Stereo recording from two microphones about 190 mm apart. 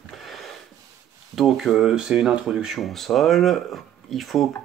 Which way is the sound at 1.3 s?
Centre (ahead or behind).